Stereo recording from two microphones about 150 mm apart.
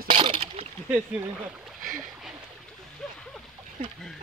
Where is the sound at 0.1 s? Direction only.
40° right (ahead or behind).